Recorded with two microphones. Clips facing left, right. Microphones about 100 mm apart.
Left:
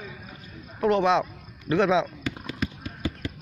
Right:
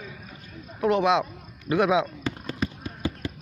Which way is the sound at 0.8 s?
5° right (ahead or behind).